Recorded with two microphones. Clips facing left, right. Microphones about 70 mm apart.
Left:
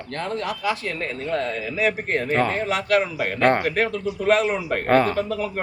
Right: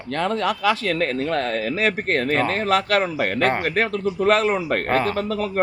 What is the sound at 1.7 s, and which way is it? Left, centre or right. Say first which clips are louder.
A man's voice: left 1 dB; right.